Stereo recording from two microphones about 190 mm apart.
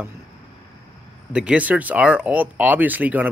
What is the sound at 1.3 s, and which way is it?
Speech, 5° right (ahead or behind).